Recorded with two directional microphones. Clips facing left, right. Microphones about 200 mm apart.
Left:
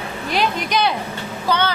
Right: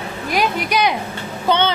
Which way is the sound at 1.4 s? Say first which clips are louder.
Right 3 dB; 25° right (ahead or behind).